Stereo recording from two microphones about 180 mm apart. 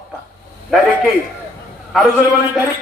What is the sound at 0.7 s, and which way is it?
Speech, centre (ahead or behind).